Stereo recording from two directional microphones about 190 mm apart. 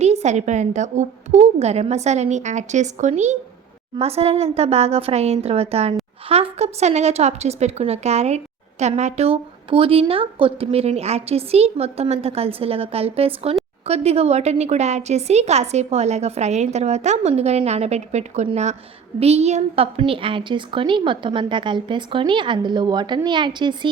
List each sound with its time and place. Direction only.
0.0 s a woman's voice: 35° right (ahead or behind)